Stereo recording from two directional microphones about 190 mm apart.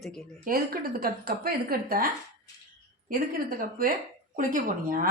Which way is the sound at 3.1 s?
50° right (ahead or behind).